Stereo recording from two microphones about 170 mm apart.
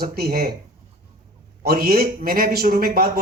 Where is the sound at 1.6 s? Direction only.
60° right (ahead or behind).